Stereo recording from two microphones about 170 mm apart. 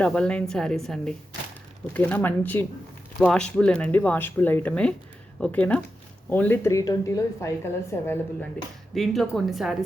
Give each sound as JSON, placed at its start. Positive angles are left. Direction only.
{"t": 0.0, "sound": "a woman's voice", "side_deg": 5}
{"t": 9.0, "sound": "a woman's voice", "side_deg": 0}